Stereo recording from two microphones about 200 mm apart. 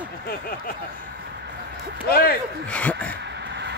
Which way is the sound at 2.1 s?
50° left (ahead or behind).